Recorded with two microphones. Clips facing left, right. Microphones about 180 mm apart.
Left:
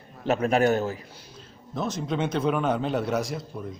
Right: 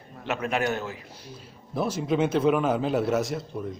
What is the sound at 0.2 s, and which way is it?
Speech, 40° left (ahead or behind).